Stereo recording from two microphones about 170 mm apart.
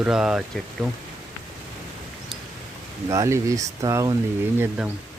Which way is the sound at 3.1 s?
20° right (ahead or behind).